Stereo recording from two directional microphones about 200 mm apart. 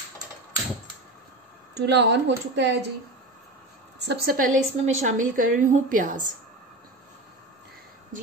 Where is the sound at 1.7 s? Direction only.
60° right (ahead or behind).